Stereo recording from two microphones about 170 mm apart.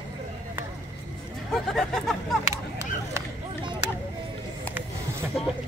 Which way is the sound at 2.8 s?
25° right (ahead or behind).